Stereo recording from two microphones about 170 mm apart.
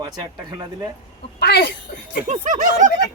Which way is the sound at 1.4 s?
75° left (ahead or behind).